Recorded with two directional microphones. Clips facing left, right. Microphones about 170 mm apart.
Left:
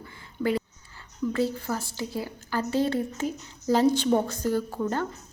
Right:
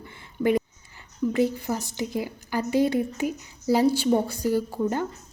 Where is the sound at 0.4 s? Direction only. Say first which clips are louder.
Right 4 dB; 15° right (ahead or behind).